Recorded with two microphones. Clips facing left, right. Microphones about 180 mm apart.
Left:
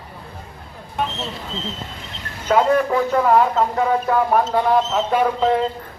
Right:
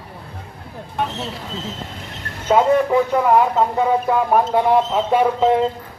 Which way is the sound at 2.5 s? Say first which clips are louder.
Right 2 dB; 15° right (ahead or behind).